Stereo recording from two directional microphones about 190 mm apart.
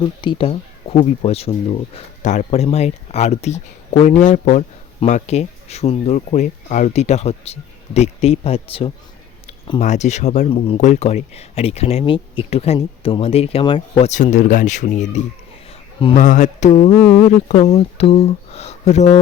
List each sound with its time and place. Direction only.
0.0 s speech: 25° left (ahead or behind)
9.5 s a sound: 25° left (ahead or behind)
9.8 s speech: 40° left (ahead or behind)
16.9 s speech: 15° left (ahead or behind)
17.5 s speech: 35° left (ahead or behind)